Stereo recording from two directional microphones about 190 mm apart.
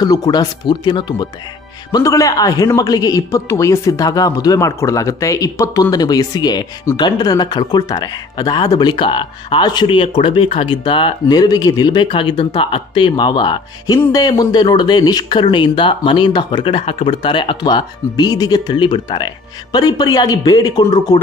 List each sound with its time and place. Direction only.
0.0 s a man's voice: 20° left (ahead or behind)